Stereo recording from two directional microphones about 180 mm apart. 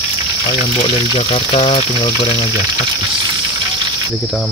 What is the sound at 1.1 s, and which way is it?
Speech, 30° left (ahead or behind).